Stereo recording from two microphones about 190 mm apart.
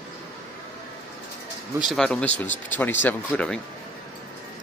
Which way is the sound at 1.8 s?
5° left (ahead or behind).